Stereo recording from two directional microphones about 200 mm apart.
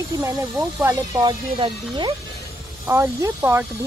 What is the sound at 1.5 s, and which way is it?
Speech, 25° right (ahead or behind).